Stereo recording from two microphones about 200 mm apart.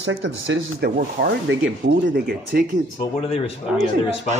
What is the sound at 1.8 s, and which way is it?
Speech, 60° right (ahead or behind).